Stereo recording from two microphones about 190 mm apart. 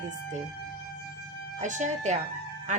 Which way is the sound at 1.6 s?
40° right (ahead or behind).